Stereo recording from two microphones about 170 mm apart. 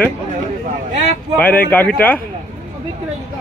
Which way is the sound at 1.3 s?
10° left (ahead or behind).